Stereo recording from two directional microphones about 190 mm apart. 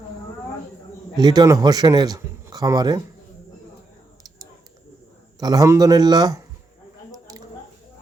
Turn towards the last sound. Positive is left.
turn(degrees=-20)  # may be behind; listen again after turning